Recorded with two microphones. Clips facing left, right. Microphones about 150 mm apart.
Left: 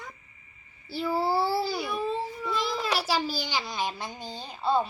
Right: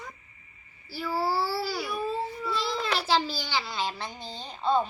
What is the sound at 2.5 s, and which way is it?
A child's voice, 15° left (ahead or behind).